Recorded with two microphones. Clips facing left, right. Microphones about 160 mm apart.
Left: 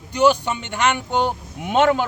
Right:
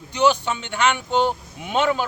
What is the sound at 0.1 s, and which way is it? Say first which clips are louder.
Speech: left 2 dB; 10° left (ahead or behind).